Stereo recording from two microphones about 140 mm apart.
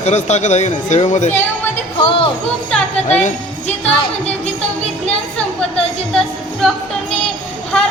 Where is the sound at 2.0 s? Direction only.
40° left (ahead or behind).